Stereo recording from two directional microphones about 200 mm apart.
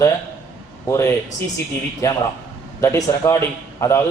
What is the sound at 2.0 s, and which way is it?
A man's voice, 15° left (ahead or behind).